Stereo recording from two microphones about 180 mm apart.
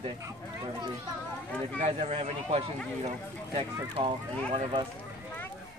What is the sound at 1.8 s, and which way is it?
A man's voice, 35° right (ahead or behind).